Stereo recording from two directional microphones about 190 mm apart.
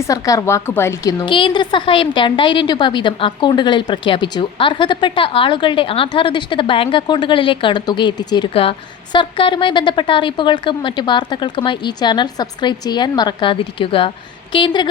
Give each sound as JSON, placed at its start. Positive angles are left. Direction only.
{"t": 0.0, "sound": "a woman's voice", "side_deg": 20}
{"t": 1.2, "sound": "a woman's voice", "side_deg": 25}